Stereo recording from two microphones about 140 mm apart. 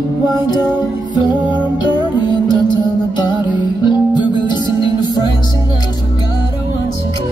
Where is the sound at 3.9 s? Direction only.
30° left (ahead or behind).